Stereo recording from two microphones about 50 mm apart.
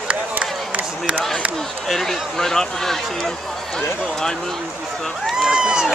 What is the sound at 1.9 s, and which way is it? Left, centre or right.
Speech, centre.